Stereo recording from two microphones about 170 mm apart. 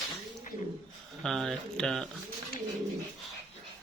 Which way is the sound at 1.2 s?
Centre (ahead or behind).